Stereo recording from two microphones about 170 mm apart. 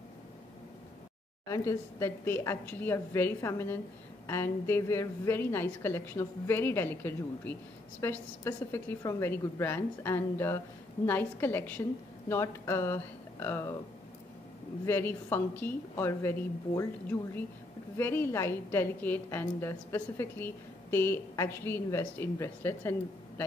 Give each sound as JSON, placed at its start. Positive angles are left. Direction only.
{"t": 1.5, "sound": "a woman's voice", "side_deg": 15}
{"t": 14.9, "sound": "a woman's voice", "side_deg": 15}
{"t": 17.9, "sound": "a woman's voice", "side_deg": 15}